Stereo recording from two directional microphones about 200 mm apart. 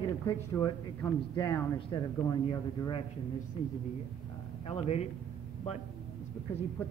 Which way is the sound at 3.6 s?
30° left (ahead or behind).